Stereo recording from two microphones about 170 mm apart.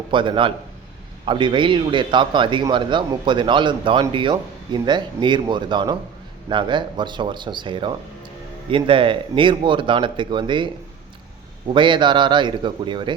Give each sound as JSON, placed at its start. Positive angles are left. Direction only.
{"t": 0.1, "sound": "a man's voice", "side_deg": -30}
{"t": 11.7, "sound": "a man's voice", "side_deg": -30}